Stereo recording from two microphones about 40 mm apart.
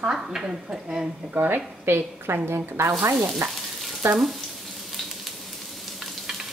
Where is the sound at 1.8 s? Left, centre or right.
Right.